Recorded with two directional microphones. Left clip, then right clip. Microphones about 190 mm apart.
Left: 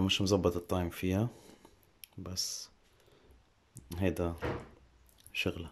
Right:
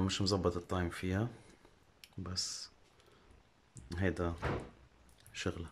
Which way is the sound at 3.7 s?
15° left (ahead or behind).